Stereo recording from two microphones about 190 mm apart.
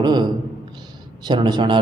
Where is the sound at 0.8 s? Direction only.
25° right (ahead or behind).